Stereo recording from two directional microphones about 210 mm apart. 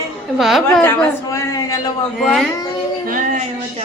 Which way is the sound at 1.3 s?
15° left (ahead or behind).